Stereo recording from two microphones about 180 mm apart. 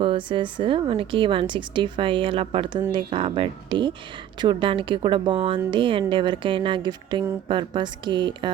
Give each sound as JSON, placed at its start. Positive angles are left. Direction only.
{"t": 0.0, "sound": "a woman's voice", "side_deg": -30}